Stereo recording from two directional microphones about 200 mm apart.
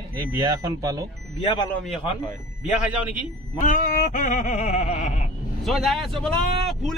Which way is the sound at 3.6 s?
40° left (ahead or behind).